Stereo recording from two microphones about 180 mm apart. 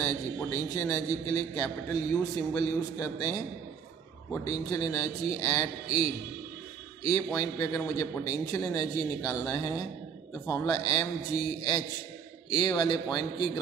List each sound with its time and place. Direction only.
0.0 s a man's voice: 20° left (ahead or behind)
7.3 s a man's voice: 15° left (ahead or behind)